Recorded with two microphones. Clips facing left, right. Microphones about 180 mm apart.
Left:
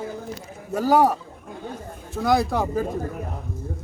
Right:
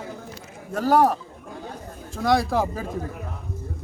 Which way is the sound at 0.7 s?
5° left (ahead or behind).